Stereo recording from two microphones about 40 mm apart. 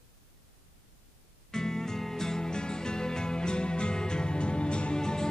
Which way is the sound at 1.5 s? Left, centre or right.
Centre.